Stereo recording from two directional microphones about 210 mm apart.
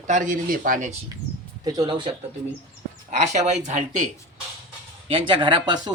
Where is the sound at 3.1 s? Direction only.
35° right (ahead or behind).